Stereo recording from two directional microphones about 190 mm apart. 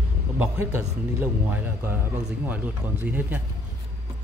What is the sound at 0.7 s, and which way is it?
Speech, 10° right (ahead or behind).